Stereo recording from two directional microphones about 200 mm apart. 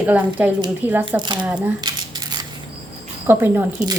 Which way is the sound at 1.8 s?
20° right (ahead or behind).